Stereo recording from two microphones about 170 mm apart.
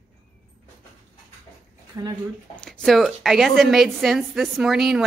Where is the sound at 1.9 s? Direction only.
20° right (ahead or behind).